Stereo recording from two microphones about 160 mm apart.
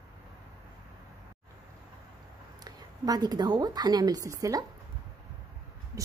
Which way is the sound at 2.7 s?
25° right (ahead or behind).